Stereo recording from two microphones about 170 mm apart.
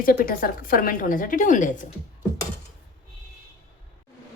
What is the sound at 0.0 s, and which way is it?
A woman's voice, 55° left (ahead or behind).